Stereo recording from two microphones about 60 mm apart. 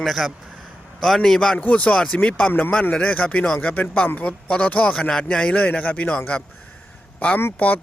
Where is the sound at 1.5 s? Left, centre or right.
Left.